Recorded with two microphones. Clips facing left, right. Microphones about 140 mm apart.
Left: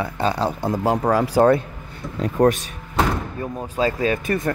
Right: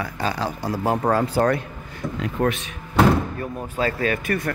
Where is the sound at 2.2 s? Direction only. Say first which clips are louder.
Left 6 dB; 40° left (ahead or behind).